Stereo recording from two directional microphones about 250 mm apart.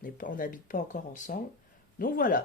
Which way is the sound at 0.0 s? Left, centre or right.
Left.